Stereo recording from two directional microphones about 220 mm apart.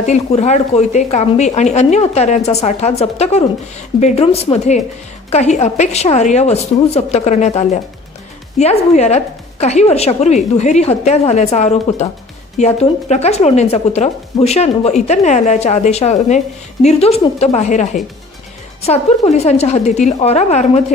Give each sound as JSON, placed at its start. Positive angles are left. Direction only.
{"t": 0.0, "sound": "a woman's voice", "side_deg": 30}